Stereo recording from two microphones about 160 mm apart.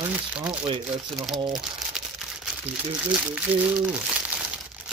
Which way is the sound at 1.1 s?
Centre (ahead or behind).